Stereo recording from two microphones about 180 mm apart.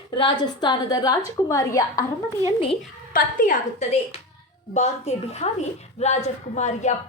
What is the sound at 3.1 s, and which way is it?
Speech, 50° left (ahead or behind).